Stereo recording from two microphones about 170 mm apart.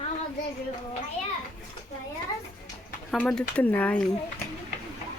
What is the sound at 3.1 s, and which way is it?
Speech, 5° left (ahead or behind).